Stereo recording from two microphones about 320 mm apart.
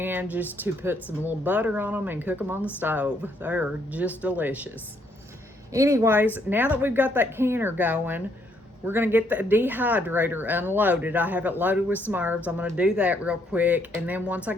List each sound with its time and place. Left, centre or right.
0.0 s speech: centre
5.7 s speech: centre